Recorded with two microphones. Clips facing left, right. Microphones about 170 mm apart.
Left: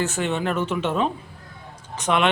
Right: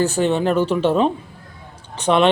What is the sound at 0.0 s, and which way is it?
Speech, 35° right (ahead or behind).